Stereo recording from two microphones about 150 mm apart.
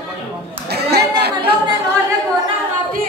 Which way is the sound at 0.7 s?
90° right.